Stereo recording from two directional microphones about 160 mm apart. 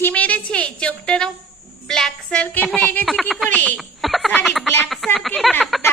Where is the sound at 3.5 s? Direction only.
10° left (ahead or behind).